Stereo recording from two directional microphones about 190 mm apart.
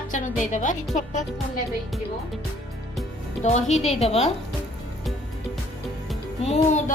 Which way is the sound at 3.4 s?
35° left (ahead or behind).